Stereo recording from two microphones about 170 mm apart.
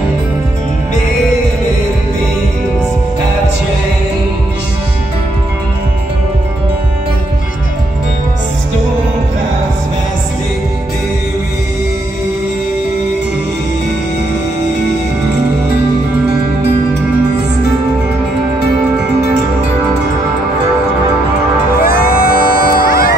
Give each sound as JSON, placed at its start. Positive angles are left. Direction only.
{"t": 21.8, "sound": "music", "side_deg": 60}